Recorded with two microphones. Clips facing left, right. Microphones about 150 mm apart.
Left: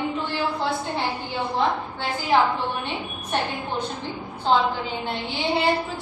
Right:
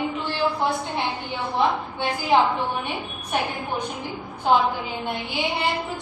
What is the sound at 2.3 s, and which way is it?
A woman's voice, 20° right (ahead or behind).